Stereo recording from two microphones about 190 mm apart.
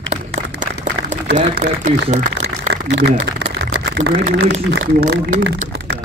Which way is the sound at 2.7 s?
65° right (ahead or behind).